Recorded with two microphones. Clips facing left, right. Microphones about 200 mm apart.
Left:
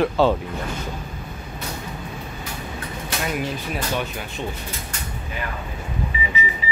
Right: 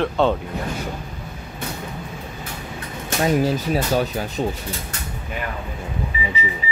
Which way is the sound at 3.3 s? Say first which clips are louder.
Right 9 dB; 40° right (ahead or behind).